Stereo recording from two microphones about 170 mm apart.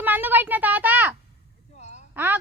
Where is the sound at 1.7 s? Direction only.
40° left (ahead or behind).